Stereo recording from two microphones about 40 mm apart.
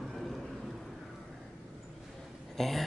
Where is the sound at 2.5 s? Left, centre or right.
Centre.